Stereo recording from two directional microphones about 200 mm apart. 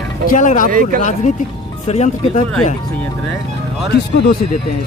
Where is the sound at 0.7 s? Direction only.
45° right (ahead or behind).